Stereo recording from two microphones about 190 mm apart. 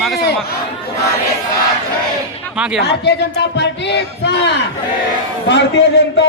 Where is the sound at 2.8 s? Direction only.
65° left (ahead or behind).